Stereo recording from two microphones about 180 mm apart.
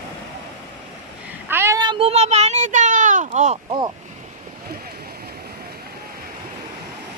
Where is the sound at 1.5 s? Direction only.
15° right (ahead or behind); by 3.7 s 40° right (ahead or behind).